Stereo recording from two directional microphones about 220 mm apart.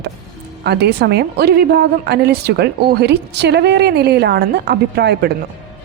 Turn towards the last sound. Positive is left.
turn(degrees=-45)  # may be behind; listen again after turning